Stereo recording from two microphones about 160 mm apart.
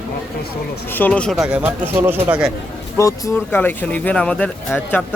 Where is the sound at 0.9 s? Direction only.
10° left (ahead or behind); by 2.5 s 5° right (ahead or behind).